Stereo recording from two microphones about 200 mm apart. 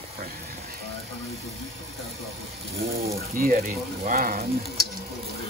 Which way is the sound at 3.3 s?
45° right (ahead or behind).